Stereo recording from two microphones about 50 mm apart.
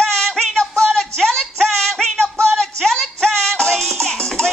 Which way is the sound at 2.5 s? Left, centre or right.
Centre.